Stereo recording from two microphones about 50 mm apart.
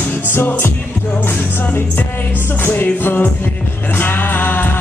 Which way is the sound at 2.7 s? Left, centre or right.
Left.